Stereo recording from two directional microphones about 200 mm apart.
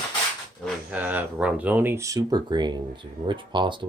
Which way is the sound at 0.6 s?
5° right (ahead or behind).